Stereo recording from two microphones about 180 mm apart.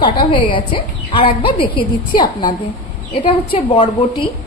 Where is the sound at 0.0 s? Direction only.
25° left (ahead or behind).